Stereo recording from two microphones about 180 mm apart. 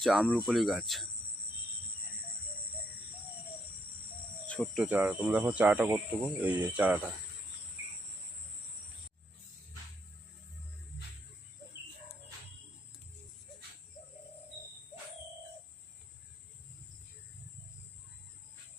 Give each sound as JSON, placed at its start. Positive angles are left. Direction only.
{"t": 0.0, "sound": "speech", "side_deg": -5}
{"t": 4.4, "sound": "speech", "side_deg": 5}